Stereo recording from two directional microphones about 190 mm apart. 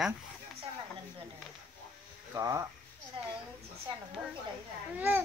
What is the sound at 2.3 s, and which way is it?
Speech, 15° right (ahead or behind).